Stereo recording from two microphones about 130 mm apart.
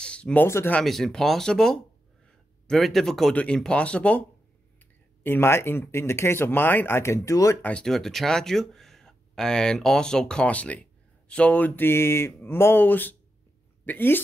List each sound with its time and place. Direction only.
0.0 s speech: 10° left (ahead or behind)
0.7 s speech: 5° left (ahead or behind)
5.2 s speech: 20° left (ahead or behind)
7.6 s speech: 5° left (ahead or behind)